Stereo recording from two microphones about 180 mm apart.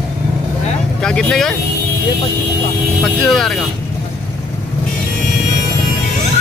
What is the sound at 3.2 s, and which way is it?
Speech, centre (ahead or behind).